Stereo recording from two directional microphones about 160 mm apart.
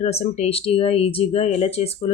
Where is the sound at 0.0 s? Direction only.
45° left (ahead or behind).